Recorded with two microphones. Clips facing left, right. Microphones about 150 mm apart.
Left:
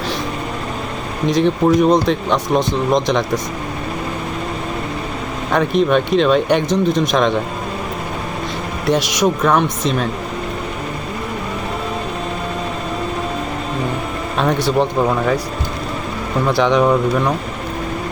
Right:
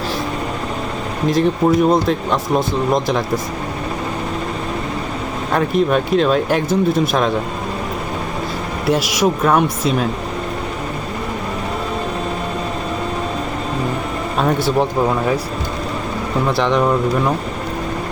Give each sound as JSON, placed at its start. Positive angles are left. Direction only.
{"t": 1.3, "sound": "speech", "side_deg": -5}
{"t": 5.5, "sound": "speech", "side_deg": -5}
{"t": 8.9, "sound": "speech", "side_deg": -5}
{"t": 14.3, "sound": "speech", "side_deg": -5}
{"t": 16.5, "sound": "speech", "side_deg": 0}